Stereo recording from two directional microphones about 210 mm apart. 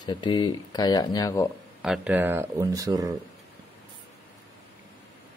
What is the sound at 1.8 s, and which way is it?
Speech, 5° right (ahead or behind).